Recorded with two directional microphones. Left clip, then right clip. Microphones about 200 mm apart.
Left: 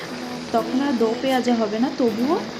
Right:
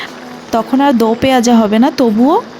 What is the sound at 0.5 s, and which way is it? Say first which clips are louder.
A woman's voice: right 11 dB; 55° right (ahead or behind).